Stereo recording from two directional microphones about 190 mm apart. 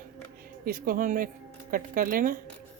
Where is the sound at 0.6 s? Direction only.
50° right (ahead or behind).